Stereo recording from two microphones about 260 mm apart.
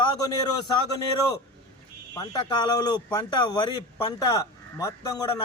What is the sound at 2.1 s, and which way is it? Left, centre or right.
Speech, centre.